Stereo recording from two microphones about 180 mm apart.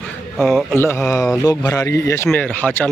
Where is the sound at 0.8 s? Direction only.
15° left (ahead or behind).